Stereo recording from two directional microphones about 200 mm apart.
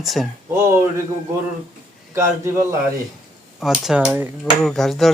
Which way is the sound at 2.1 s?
15° right (ahead or behind).